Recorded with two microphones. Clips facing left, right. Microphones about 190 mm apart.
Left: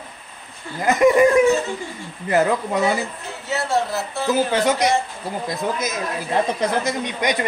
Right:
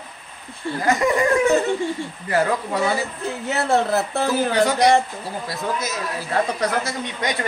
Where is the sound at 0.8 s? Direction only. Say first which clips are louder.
Left 5 dB; 20° left (ahead or behind).